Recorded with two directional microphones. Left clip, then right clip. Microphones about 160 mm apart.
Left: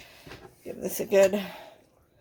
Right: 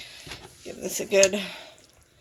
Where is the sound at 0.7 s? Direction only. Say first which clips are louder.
Even; 10° left (ahead or behind).